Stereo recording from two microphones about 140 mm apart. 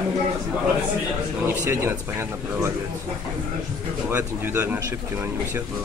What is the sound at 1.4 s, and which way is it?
A man's voice, 20° right (ahead or behind).